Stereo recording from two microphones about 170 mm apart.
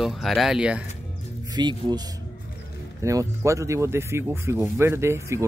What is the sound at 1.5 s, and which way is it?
Speech, 25° right (ahead or behind).